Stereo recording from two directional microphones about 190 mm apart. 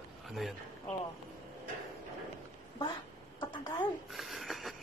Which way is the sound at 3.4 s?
20° left (ahead or behind).